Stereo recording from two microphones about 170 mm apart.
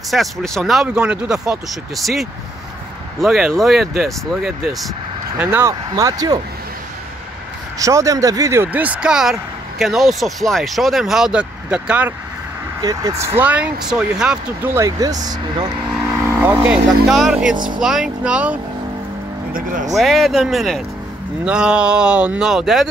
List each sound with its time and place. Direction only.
0.1 s speech: centre (ahead or behind)
5.4 s speech: 15° right (ahead or behind)
7.8 s speech: 20° right (ahead or behind)
12.8 s speech: 20° right (ahead or behind)
13.4 s speech: 10° right (ahead or behind)
16.3 s speech: 10° right (ahead or behind)
19.9 s speech: centre (ahead or behind)